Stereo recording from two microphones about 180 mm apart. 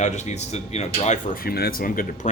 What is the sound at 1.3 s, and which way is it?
Speech, 55° left (ahead or behind).